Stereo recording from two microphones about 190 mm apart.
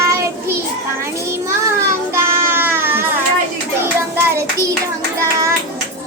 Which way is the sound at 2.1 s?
10° right (ahead or behind).